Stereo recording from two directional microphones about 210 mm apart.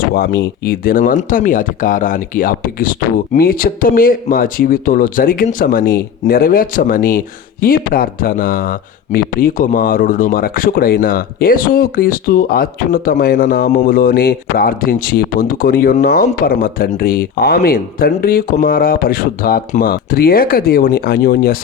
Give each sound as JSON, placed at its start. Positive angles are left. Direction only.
{"t": 0.1, "sound": "speech", "side_deg": 50}